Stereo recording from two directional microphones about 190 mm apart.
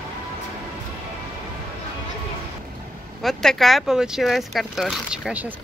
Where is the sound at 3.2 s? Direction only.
Centre (ahead or behind).